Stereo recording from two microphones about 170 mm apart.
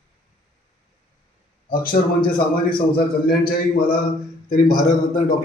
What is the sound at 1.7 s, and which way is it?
Speech, 60° left (ahead or behind).